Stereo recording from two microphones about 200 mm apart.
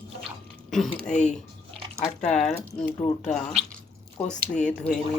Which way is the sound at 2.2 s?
5° left (ahead or behind).